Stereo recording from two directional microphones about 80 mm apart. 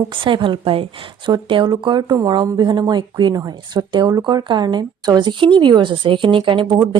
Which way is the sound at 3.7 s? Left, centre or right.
Right.